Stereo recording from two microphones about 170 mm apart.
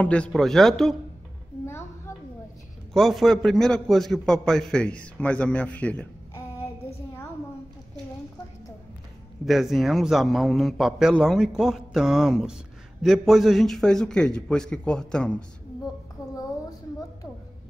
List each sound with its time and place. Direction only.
0.0 s a man's voice: 5° left (ahead or behind)
1.7 s a sound: 15° left (ahead or behind)
2.9 s a man's voice: centre (ahead or behind)
9.5 s a man's voice: centre (ahead or behind)
16.2 s speech: 20° left (ahead or behind)